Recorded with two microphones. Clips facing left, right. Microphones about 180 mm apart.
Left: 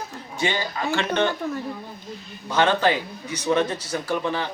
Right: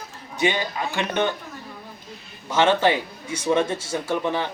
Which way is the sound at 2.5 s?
25° right (ahead or behind).